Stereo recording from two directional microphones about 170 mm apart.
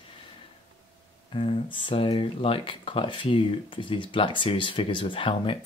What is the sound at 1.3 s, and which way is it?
Speech, 35° left (ahead or behind).